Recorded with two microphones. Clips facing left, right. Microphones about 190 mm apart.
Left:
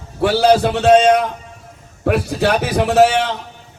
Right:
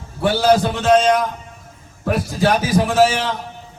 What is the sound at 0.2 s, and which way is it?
A man's voice, 65° left (ahead or behind).